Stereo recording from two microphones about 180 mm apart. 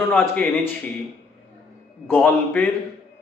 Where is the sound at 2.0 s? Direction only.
10° left (ahead or behind).